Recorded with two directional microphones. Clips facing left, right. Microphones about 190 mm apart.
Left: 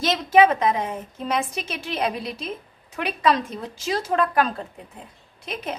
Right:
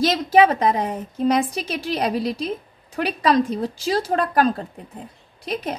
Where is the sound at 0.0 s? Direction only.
35° right (ahead or behind).